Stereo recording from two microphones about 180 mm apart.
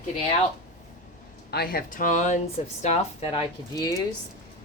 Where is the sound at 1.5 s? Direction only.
55° left (ahead or behind); by 3.4 s 35° left (ahead or behind).